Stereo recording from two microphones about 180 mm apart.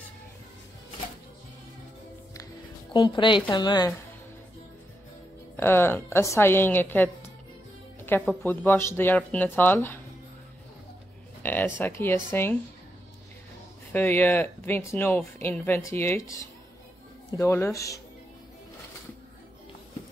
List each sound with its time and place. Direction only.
2.9 s a woman's voice: 25° left (ahead or behind)
5.6 s speech: 10° left (ahead or behind)
11.4 s speech: 10° left (ahead or behind)
13.9 s speech: 10° left (ahead or behind)